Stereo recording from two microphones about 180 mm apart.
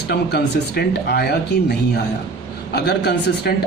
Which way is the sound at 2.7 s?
65° left (ahead or behind).